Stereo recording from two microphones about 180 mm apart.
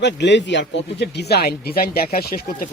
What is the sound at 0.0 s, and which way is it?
Speech, 75° left (ahead or behind).